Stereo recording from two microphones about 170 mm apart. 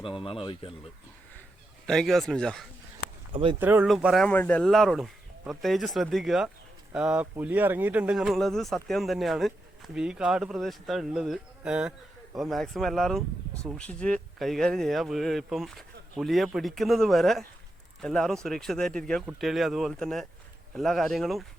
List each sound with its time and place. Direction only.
0.2 s speech: 30° left (ahead or behind)
1.9 s speech: centre (ahead or behind)
3.3 s speech: 30° right (ahead or behind)
3.6 s speech: 10° right (ahead or behind)
3.8 s speech: centre (ahead or behind)